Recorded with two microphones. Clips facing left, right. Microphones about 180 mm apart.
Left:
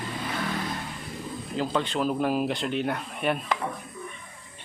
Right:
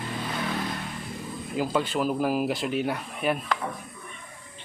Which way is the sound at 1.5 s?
5° right (ahead or behind).